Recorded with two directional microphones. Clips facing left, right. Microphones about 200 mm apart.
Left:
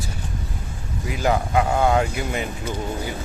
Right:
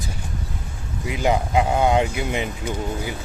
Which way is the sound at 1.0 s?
15° right (ahead or behind).